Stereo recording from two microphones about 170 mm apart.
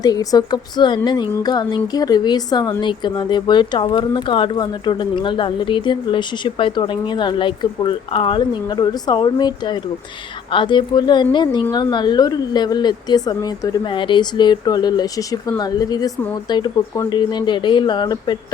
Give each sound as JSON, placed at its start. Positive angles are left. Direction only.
{"t": 0.0, "sound": "a woman's voice", "side_deg": 20}